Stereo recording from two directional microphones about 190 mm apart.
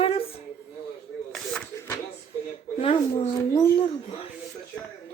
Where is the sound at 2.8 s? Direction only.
30° left (ahead or behind).